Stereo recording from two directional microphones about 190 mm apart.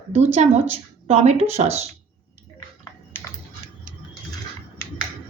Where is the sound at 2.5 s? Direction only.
15° left (ahead or behind).